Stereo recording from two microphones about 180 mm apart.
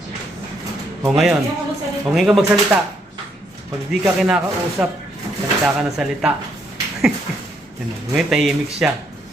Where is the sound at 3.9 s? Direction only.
5° right (ahead or behind).